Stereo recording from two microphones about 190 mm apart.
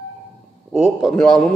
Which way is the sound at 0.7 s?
Centre (ahead or behind).